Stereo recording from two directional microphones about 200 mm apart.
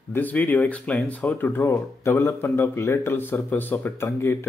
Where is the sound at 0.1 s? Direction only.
10° left (ahead or behind).